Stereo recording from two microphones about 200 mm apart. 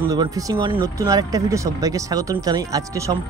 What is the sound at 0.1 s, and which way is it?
Speech, 20° right (ahead or behind).